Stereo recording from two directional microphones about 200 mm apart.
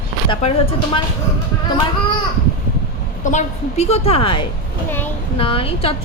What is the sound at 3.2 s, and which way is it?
A woman's voice, 35° left (ahead or behind).